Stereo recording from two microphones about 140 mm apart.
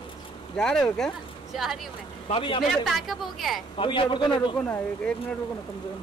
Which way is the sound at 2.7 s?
Centre (ahead or behind).